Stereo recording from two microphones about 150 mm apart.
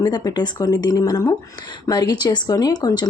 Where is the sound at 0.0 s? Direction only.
25° left (ahead or behind).